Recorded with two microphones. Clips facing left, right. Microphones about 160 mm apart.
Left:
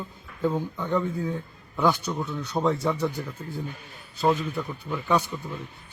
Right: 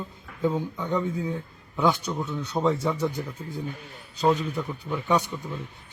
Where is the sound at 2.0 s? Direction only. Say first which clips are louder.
Even; 10° left (ahead or behind).